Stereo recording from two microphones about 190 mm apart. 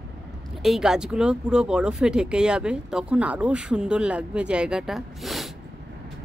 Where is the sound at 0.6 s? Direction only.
Centre (ahead or behind).